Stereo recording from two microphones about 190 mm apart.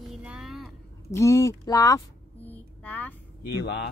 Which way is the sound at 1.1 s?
15° left (ahead or behind).